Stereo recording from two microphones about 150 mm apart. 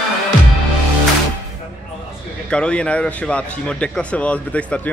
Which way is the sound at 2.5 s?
5° left (ahead or behind).